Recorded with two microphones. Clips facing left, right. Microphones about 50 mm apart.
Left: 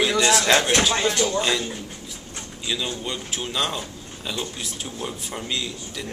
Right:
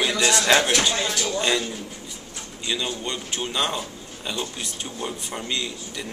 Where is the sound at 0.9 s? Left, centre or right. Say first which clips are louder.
Left 4 dB; left.